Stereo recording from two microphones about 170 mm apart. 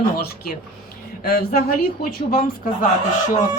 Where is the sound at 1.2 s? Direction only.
60° left (ahead or behind).